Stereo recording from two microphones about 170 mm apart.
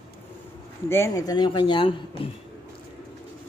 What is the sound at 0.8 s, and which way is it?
A man's voice, 15° left (ahead or behind).